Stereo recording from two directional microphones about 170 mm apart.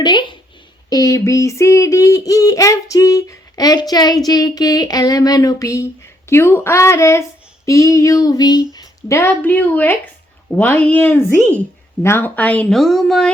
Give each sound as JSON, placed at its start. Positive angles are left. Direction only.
{"t": 0.0, "sound": "a sound", "side_deg": 25}
{"t": 6.2, "sound": "female singing", "side_deg": 15}
{"t": 12.0, "sound": "speech", "side_deg": 10}